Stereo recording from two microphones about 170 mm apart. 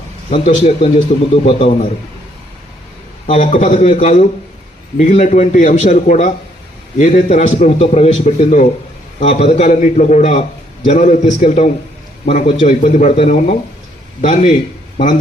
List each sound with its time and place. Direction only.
0.4 s a man's voice: 40° left (ahead or behind)
3.2 s a man's voice: 40° left (ahead or behind)